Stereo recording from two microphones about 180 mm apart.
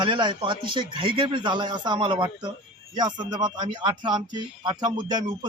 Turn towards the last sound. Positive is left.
turn(degrees=-25)  # may be behind; listen again after turning